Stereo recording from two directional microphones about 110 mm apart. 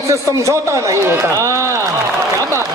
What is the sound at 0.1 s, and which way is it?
Speech, 30° right (ahead or behind).